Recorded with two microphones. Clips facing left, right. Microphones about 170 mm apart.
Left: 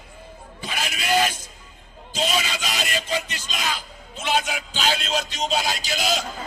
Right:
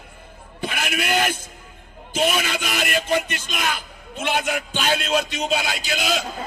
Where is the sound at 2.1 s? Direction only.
60° right (ahead or behind).